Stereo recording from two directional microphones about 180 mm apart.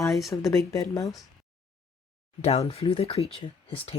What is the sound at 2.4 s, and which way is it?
Speech, 35° left (ahead or behind).